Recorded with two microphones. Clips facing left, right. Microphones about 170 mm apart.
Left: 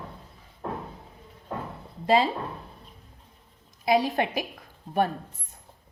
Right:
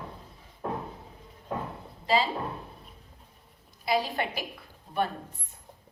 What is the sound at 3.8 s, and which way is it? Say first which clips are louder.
Speech: left 5 dB; 45° left (ahead or behind).